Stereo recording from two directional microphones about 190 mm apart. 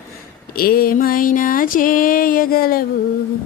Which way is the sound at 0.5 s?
50° left (ahead or behind).